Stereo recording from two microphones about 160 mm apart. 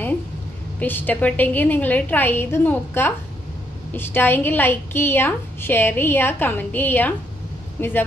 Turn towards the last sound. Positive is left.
turn(degrees=15)  # may be behind; listen again after turning